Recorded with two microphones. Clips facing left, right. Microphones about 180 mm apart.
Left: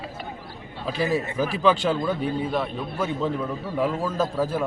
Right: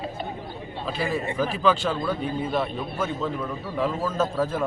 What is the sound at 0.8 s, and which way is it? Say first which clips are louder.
A man's voice: left 3 dB; 10° left (ahead or behind).